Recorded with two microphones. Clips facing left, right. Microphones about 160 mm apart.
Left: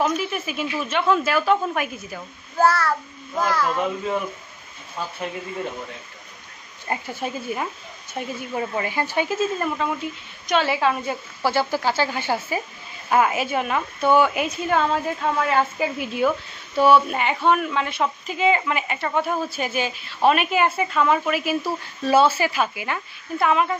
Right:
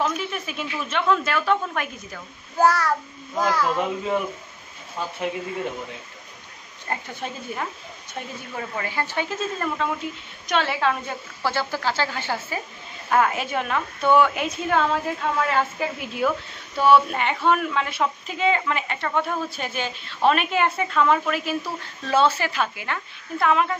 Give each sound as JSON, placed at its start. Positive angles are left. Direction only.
{"t": 0.0, "sound": "a woman's voice", "side_deg": 5}
{"t": 2.6, "sound": "a child's voice", "side_deg": -15}
{"t": 6.9, "sound": "a woman's voice", "side_deg": 10}